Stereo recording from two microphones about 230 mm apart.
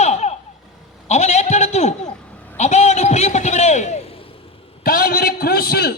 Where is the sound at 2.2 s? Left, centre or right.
Centre.